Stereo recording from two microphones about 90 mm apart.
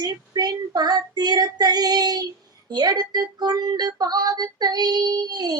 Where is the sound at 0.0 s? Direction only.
45° right (ahead or behind).